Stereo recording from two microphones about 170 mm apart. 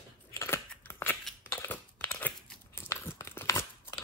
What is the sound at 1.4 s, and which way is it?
Crumpling, 15° left (ahead or behind).